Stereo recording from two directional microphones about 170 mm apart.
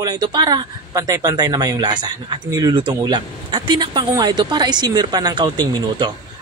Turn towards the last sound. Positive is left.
turn(degrees=-25)  # may be behind; listen again after turning